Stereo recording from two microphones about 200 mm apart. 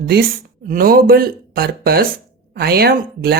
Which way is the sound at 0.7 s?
45° right (ahead or behind).